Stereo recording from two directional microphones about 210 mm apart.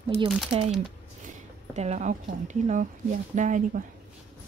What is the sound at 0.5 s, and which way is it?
Speech, 25° right (ahead or behind).